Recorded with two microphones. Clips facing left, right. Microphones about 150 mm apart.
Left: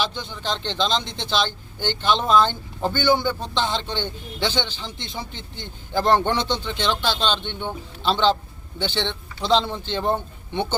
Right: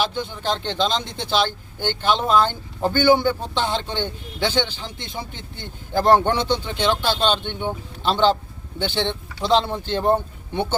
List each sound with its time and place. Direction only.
0.0 s speech: 10° right (ahead or behind)
2.9 s a man's voice: 50° right (ahead or behind)
3.4 s speech: 10° right (ahead or behind)